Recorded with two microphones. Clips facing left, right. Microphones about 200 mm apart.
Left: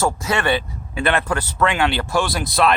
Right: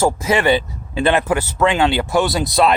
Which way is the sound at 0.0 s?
20° right (ahead or behind).